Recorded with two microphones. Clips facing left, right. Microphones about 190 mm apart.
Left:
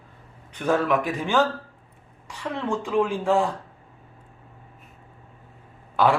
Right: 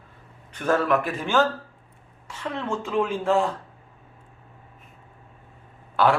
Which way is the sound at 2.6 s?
15° left (ahead or behind).